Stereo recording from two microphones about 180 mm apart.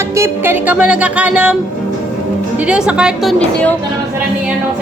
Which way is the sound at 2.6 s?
5° right (ahead or behind).